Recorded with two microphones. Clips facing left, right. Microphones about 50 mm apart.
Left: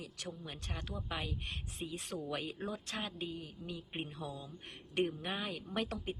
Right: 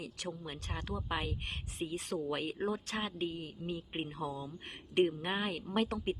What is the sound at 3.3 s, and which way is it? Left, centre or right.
Speech, right.